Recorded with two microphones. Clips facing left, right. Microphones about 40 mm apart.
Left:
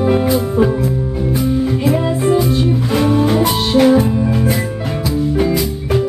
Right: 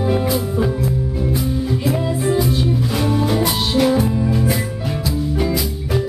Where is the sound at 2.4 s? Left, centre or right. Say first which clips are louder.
Left 3 dB; centre.